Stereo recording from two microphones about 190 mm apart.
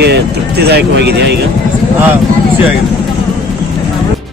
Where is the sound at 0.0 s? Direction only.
60° right (ahead or behind).